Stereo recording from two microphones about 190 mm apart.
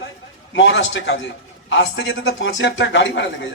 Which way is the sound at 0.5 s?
70° left (ahead or behind).